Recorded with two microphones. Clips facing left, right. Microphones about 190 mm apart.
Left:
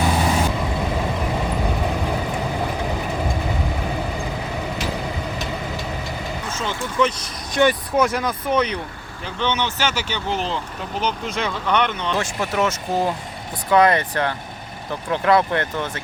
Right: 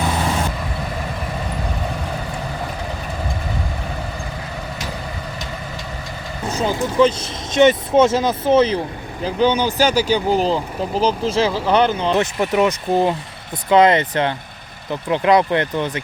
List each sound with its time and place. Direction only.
6.5 s speech: 35° right (ahead or behind)
7.5 s speech: 20° right (ahead or behind)
12.1 s speech: 20° right (ahead or behind)